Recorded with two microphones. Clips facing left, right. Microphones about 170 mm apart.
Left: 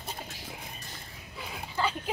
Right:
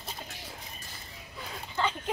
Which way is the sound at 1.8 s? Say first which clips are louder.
Even; 5° left (ahead or behind).